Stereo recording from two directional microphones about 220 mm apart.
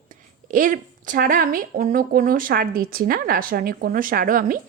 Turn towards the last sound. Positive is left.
turn(degrees=-40)  # may be behind; listen again after turning